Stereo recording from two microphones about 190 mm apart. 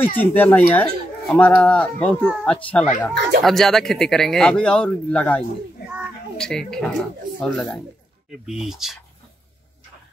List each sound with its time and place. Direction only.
0.2 s speech: 10° left (ahead or behind)